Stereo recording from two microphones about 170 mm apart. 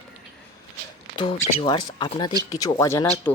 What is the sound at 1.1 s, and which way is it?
Speech, 30° left (ahead or behind).